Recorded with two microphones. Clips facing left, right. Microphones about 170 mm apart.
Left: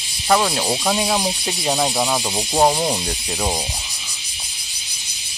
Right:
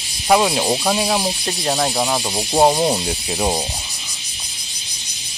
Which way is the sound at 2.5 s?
15° right (ahead or behind).